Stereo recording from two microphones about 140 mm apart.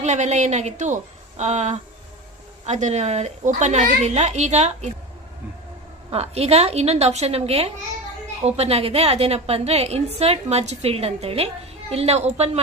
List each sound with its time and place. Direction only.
0.0 s a child's voice: 55° right (ahead or behind)
6.1 s a woman's voice: 45° right (ahead or behind)